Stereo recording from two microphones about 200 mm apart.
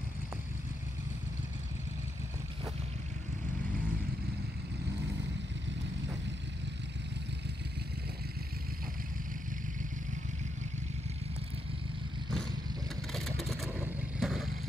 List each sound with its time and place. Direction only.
13.1 s vehicle: centre (ahead or behind)